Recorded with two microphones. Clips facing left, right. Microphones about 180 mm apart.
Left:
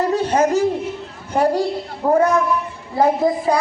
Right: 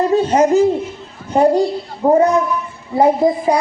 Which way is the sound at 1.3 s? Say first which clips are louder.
Right 5 dB; 20° right (ahead or behind).